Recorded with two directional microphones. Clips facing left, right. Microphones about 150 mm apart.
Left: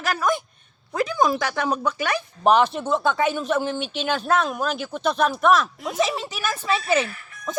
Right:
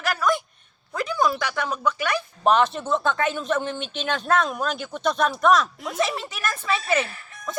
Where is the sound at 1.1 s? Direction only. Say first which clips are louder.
Even; 45° left (ahead or behind).